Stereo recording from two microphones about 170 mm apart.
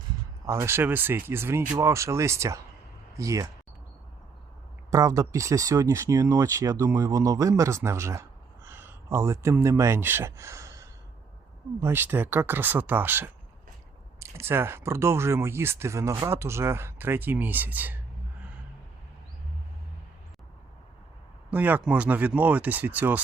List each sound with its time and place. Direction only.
0.4 s speech: 15° right (ahead or behind)
4.9 s speech: 20° right (ahead or behind)
21.5 s speech: 10° right (ahead or behind)